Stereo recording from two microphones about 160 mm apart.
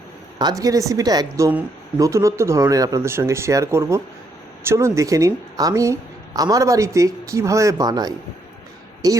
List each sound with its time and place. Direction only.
0.3 s a woman's voice: 25° right (ahead or behind)